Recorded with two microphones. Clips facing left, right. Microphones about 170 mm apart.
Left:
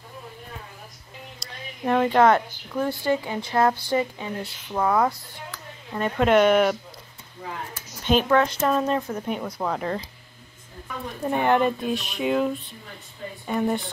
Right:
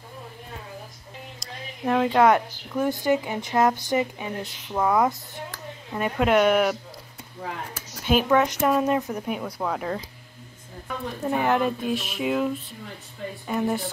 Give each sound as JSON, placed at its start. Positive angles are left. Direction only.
{"t": 1.4, "sound": "speech", "side_deg": -5}
{"t": 8.0, "sound": "speech", "side_deg": -10}
{"t": 9.6, "sound": "speech", "side_deg": 0}
{"t": 11.2, "sound": "speech", "side_deg": -5}